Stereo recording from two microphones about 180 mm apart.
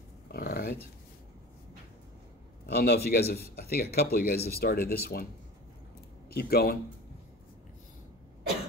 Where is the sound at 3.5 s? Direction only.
60° left (ahead or behind).